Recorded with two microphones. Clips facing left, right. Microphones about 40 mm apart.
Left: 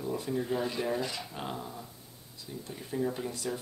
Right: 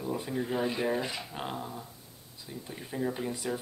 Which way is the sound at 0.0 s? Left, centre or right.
Centre.